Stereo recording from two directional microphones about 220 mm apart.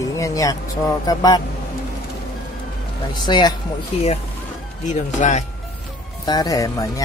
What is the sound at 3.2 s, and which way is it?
Speech, 20° left (ahead or behind).